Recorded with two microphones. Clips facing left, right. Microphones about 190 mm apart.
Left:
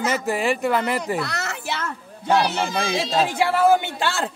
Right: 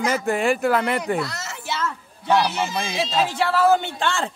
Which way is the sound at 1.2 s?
65° left (ahead or behind).